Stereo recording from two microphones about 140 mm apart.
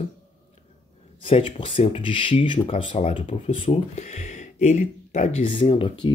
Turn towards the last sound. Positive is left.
turn(degrees=40)  # may be behind; listen again after turning